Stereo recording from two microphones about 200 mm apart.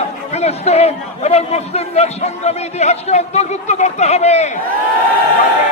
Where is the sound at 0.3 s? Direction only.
30° left (ahead or behind).